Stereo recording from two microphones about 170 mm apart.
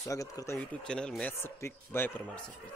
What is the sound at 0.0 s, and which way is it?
Speech, 20° left (ahead or behind).